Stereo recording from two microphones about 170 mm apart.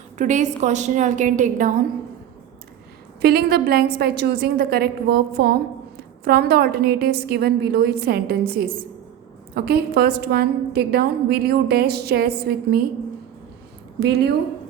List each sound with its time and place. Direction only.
0.2 s a woman's voice: 45° right (ahead or behind)
3.2 s a woman's voice: 70° right (ahead or behind)
14.0 s a woman's voice: 70° right (ahead or behind)